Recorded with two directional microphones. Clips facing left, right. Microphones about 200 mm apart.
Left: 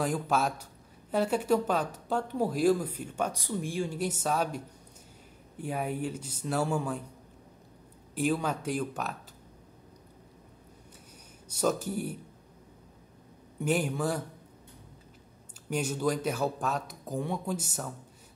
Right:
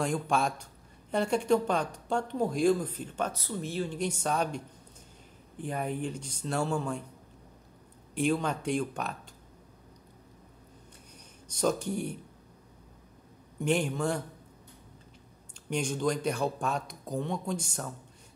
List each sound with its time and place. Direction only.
0.0 s speech: 5° left (ahead or behind)
8.1 s speech: 5° left (ahead or behind)
11.4 s speech: 5° left (ahead or behind)
13.6 s speech: 5° left (ahead or behind)
15.7 s speech: 5° left (ahead or behind)